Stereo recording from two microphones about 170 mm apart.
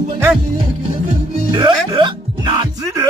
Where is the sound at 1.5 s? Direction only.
25° right (ahead or behind).